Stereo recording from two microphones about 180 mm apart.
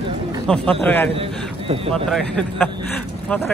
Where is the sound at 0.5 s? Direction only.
5° left (ahead or behind).